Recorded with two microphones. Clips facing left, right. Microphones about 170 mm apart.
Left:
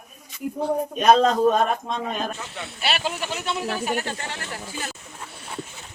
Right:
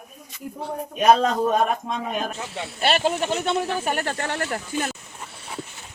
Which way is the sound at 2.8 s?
45° right (ahead or behind).